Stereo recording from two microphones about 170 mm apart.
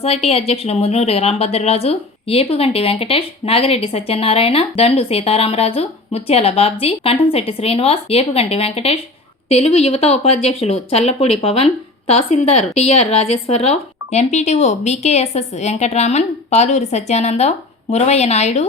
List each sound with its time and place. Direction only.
0.0 s a woman's voice: 35° left (ahead or behind)